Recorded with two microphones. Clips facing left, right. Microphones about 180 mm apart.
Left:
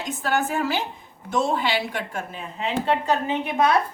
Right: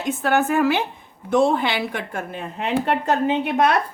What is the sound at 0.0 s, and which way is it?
A woman's voice, 60° right (ahead or behind).